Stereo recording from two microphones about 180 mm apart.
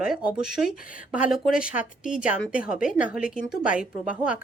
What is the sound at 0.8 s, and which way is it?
Speech, 50° left (ahead or behind).